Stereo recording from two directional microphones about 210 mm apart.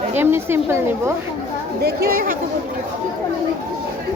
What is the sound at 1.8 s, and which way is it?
Speech, 45° right (ahead or behind).